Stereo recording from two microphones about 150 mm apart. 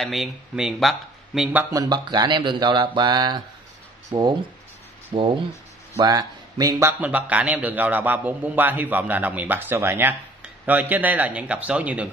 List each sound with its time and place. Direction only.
0.0 s speech: centre (ahead or behind)
1.7 s a man's voice: 25° right (ahead or behind); by 12.1 s 10° right (ahead or behind)